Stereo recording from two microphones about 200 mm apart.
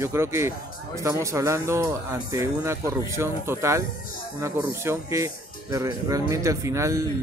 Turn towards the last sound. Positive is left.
turn(degrees=-15)  # may be behind; listen again after turning